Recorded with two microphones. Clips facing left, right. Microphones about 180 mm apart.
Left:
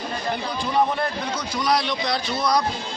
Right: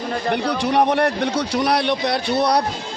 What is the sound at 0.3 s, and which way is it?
A man's voice, 75° right (ahead or behind).